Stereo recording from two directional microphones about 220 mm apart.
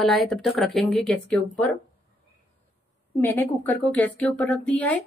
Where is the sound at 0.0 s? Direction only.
Centre (ahead or behind).